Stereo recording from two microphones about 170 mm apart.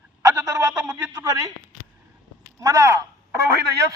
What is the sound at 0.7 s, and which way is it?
Speech, 5° right (ahead or behind).